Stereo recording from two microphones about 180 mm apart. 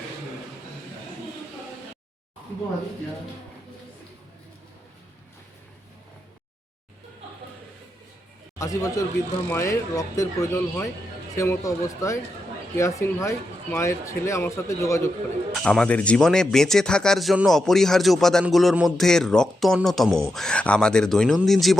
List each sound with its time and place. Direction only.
8.5 s a man's voice: 20° left (ahead or behind)
15.6 s speech: 5° left (ahead or behind)